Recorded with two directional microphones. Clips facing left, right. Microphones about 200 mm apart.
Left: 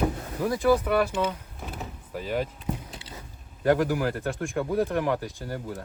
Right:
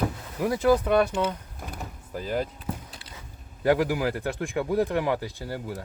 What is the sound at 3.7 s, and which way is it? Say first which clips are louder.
Speech: even; 10° right (ahead or behind).